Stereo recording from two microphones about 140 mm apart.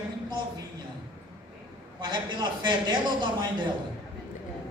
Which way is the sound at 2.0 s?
35° right (ahead or behind).